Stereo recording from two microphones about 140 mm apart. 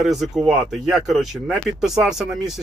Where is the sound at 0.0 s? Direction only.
Centre (ahead or behind).